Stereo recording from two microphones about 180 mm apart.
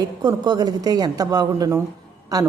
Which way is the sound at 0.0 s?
20° right (ahead or behind).